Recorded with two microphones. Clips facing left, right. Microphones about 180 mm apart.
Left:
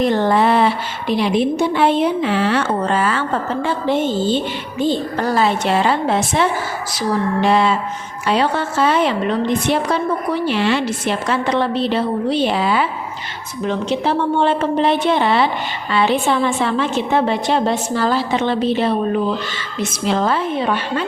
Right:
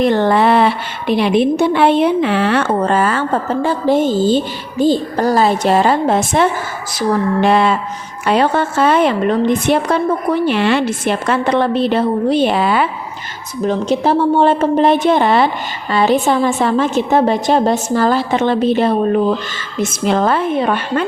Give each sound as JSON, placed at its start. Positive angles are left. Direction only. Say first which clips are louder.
{"t": 0.0, "sound": "a woman's voice", "louder": "right 3 dB", "side_deg": -65}
{"t": 7.4, "sound": "a sound", "louder": "right 2 dB", "side_deg": -55}
{"t": 8.3, "sound": "a woman's voice", "louder": "right 4 dB", "side_deg": -50}
{"t": 13.7, "sound": "a woman's voice", "louder": "right 4 dB", "side_deg": -40}